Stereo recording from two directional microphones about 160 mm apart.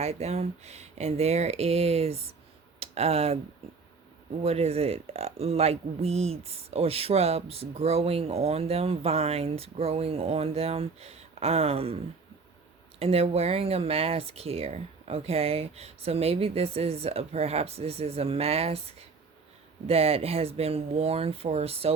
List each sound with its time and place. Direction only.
0.0 s speech: 40° right (ahead or behind)
4.4 s speech: 40° right (ahead or behind)
13.0 s speech: 40° right (ahead or behind)